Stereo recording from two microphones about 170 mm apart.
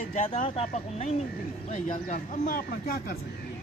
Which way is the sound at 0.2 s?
45° left (ahead or behind).